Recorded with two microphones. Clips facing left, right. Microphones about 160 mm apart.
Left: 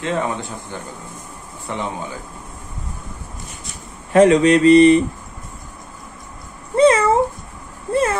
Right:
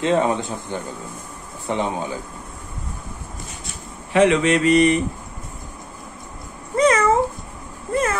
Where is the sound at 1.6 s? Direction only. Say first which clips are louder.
Right 3 dB; 20° right (ahead or behind).